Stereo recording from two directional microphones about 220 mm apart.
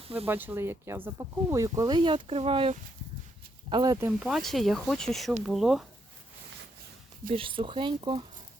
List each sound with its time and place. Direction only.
0.3 s speech: 10° right (ahead or behind)
7.3 s speech: 25° right (ahead or behind)